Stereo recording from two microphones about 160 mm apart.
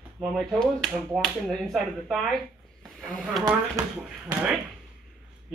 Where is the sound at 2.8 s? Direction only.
Centre (ahead or behind).